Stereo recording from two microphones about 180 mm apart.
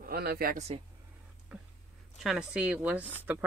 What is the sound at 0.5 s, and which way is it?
Speech, 35° right (ahead or behind).